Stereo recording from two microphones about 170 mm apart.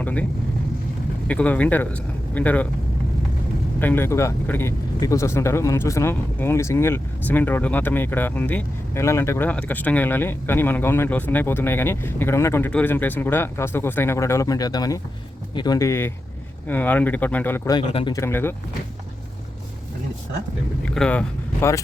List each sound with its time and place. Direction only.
0.0 s speech: 10° left (ahead or behind)
1.3 s speech: 10° left (ahead or behind)
3.8 s speech: 10° left (ahead or behind)
17.7 s speech: 25° left (ahead or behind)
18.2 s speech: 15° left (ahead or behind)
20.8 s speech: 5° left (ahead or behind)